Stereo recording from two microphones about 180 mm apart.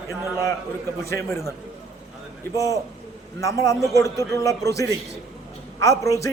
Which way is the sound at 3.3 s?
15° left (ahead or behind).